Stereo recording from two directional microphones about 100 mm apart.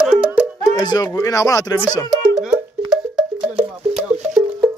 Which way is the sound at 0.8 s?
40° left (ahead or behind).